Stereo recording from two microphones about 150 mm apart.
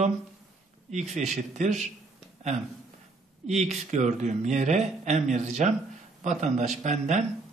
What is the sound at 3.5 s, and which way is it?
Speech, 50° right (ahead or behind).